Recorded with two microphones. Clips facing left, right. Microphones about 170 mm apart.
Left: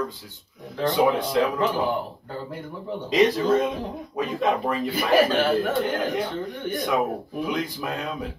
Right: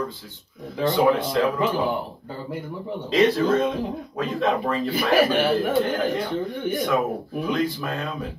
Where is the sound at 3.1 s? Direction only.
15° left (ahead or behind).